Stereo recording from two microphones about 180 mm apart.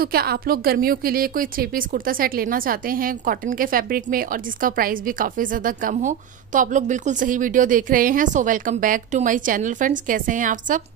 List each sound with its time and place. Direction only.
0.0 s a woman's voice: 60° right (ahead or behind)